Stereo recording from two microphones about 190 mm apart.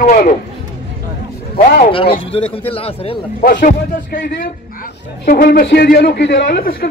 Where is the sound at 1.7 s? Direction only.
50° left (ahead or behind).